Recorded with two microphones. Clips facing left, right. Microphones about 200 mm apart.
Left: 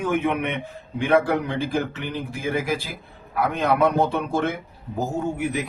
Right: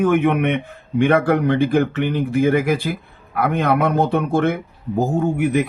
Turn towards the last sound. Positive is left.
turn(degrees=-55)  # may be behind; listen again after turning